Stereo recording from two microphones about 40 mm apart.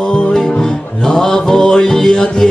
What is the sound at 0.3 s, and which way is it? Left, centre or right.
Music, centre.